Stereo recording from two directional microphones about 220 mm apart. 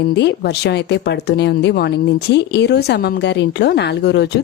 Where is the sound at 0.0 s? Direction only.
50° left (ahead or behind).